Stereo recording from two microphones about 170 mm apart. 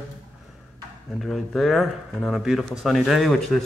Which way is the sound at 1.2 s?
Centre (ahead or behind).